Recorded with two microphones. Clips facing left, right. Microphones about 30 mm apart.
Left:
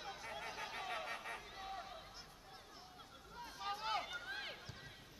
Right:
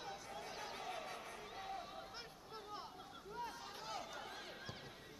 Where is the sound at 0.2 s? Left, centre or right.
Left.